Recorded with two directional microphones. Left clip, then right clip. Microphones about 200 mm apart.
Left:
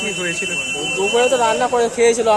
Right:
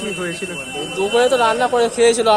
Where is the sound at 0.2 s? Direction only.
30° right (ahead or behind).